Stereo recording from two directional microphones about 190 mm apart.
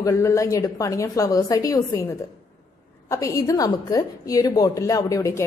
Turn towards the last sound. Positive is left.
turn(degrees=15)  # may be behind; listen again after turning